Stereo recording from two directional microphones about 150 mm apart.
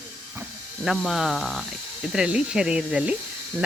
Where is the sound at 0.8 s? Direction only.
Centre (ahead or behind).